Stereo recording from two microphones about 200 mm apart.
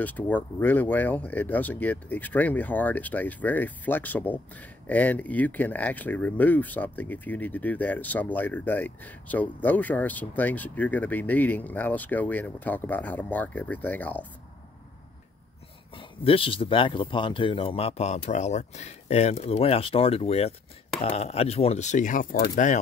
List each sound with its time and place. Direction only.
0.0 s speech: 10° left (ahead or behind)
16.0 s speech: 25° left (ahead or behind)